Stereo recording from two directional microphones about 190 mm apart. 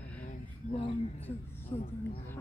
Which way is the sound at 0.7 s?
25° left (ahead or behind).